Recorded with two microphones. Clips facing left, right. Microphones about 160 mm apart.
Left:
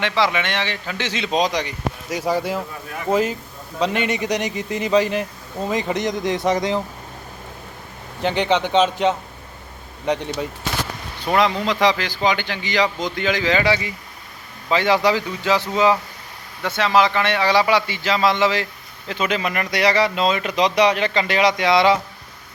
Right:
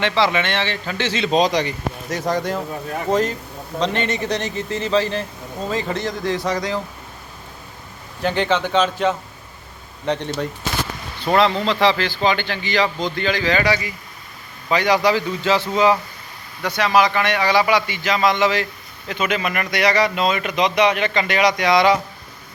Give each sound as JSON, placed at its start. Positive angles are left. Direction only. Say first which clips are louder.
{"t": 0.3, "sound": "speech", "louder": "right 2 dB", "side_deg": 15}
{"t": 8.2, "sound": "speech", "louder": "even", "side_deg": 20}
{"t": 15.6, "sound": "speech", "louder": "right 1 dB", "side_deg": -20}
{"t": 17.7, "sound": "a man's voice", "louder": "even", "side_deg": 30}
{"t": 18.3, "sound": "a man's voice", "louder": "right 1 dB", "side_deg": -20}
{"t": 18.5, "sound": "speech", "louder": "right 1 dB", "side_deg": 25}